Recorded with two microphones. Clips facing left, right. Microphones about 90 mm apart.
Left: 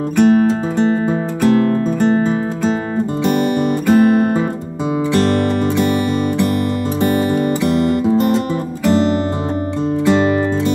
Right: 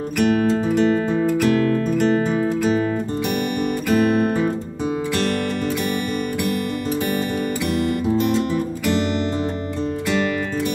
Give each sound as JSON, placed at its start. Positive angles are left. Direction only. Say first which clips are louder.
{"t": 0.2, "sound": "music", "louder": "left 6 dB", "side_deg": 35}
{"t": 3.8, "sound": "music", "louder": "left 6 dB", "side_deg": 30}
{"t": 8.8, "sound": "music", "louder": "left 9 dB", "side_deg": 35}